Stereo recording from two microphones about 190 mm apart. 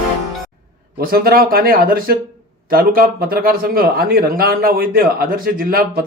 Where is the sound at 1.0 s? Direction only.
50° right (ahead or behind).